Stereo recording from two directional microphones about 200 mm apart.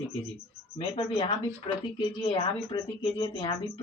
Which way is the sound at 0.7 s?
30° left (ahead or behind).